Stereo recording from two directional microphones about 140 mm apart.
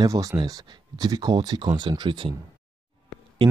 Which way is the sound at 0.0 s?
25° right (ahead or behind).